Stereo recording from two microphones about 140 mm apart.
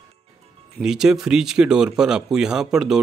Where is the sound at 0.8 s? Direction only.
5° right (ahead or behind).